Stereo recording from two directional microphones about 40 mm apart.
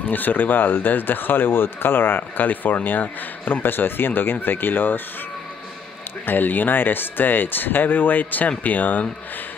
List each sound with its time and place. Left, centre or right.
0.1 s speech: left
6.2 s speech: left